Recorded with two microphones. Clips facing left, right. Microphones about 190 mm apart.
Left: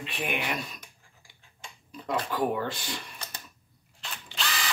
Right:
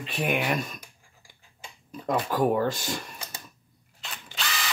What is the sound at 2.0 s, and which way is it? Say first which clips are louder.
Speech: right 4 dB; 45° right (ahead or behind).